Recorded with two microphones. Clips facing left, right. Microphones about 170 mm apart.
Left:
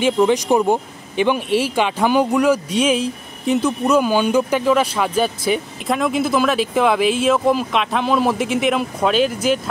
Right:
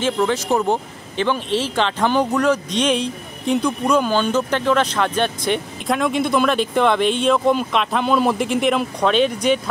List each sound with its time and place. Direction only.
0.0 s speech: 15° left (ahead or behind)